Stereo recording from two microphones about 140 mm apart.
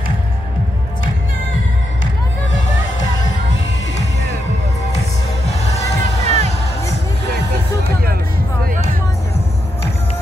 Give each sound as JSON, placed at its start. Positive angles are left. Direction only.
{"t": 6.2, "sound": "music", "side_deg": -50}